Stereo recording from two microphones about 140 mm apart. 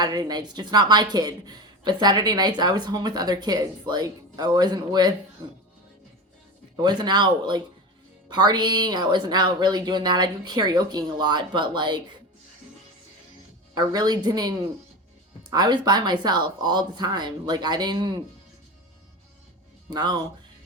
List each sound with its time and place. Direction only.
0.0 s a woman's voice: 30° right (ahead or behind)
6.8 s speech: 30° right (ahead or behind)
13.7 s a woman's voice: 30° right (ahead or behind)
15.5 s speech: 30° right (ahead or behind)
19.9 s speech: 30° right (ahead or behind)